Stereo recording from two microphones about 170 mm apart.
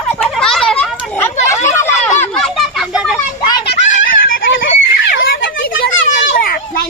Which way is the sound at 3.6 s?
75° left (ahead or behind).